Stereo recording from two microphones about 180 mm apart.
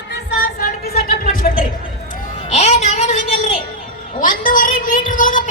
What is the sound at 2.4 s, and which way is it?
Music, 35° left (ahead or behind).